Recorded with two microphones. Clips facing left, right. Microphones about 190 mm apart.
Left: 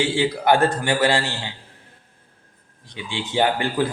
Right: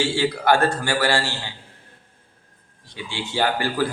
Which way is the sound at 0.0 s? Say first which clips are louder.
Left 1 dB; 20° left (ahead or behind).